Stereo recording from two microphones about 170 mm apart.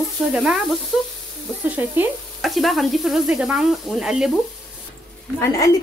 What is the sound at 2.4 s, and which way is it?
Snake, centre (ahead or behind).